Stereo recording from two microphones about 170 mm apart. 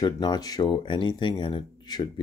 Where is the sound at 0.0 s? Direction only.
25° left (ahead or behind).